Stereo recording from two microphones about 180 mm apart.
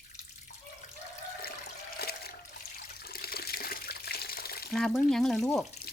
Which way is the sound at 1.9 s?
60° left (ahead or behind).